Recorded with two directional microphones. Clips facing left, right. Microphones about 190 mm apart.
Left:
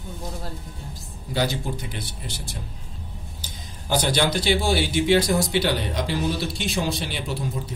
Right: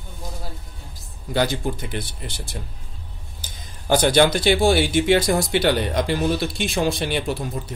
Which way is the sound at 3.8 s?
55° right (ahead or behind).